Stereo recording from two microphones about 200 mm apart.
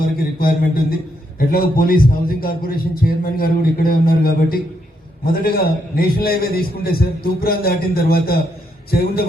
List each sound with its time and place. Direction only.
0.3 s a man's voice: 45° left (ahead or behind)